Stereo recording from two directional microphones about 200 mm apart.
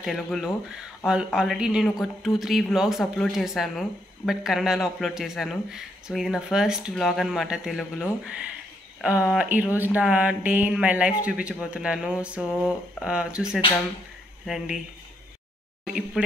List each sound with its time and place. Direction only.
0.0 s speech: centre (ahead or behind)
9.0 s speech: 5° right (ahead or behind)